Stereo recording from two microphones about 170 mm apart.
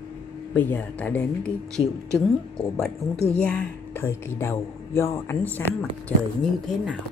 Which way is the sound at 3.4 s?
10° left (ahead or behind).